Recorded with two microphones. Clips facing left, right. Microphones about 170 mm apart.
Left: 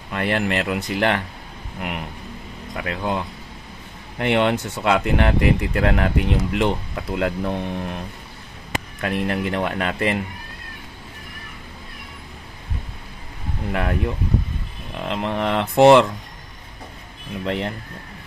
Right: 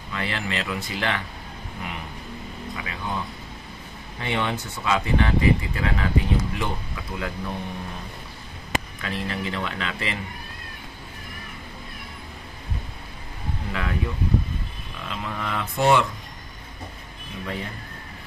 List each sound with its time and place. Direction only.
0.1 s speech: 55° left (ahead or behind)
1.8 s speech: 70° left (ahead or behind)
9.0 s speech: 55° left (ahead or behind)
13.7 s speech: 50° left (ahead or behind)
15.0 s speech: 65° left (ahead or behind); by 16.1 s 85° left
17.5 s speech: 70° left (ahead or behind)